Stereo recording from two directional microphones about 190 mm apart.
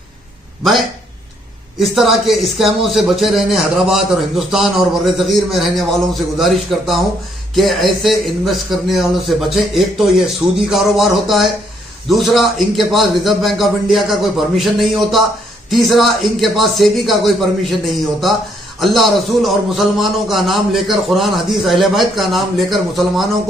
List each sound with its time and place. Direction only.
1.8 s a man's voice: centre (ahead or behind)
18.8 s a man's voice: centre (ahead or behind)